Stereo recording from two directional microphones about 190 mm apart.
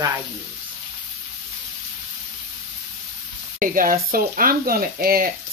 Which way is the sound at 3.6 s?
45° right (ahead or behind).